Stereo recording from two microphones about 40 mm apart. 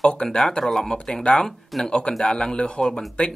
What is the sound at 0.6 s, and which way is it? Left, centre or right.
Speech, centre.